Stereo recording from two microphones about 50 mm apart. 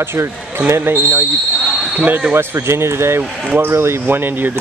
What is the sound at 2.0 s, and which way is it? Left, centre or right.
Speech, right.